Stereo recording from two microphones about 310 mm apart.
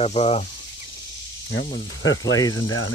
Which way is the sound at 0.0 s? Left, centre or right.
Centre.